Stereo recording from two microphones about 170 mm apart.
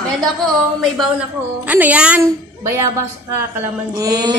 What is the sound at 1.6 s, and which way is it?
A woman's voice, 10° right (ahead or behind).